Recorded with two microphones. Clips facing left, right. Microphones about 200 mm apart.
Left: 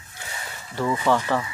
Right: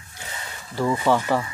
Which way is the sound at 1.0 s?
10° right (ahead or behind).